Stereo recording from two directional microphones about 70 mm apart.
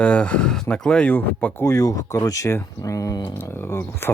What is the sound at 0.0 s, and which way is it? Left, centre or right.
Speech, centre.